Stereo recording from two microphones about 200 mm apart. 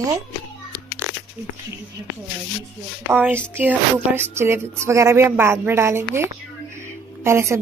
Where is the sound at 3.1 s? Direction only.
10° right (ahead or behind).